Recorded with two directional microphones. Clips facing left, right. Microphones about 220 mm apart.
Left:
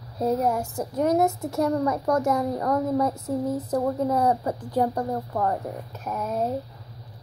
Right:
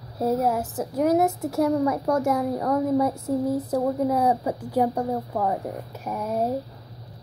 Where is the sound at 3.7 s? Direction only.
5° right (ahead or behind).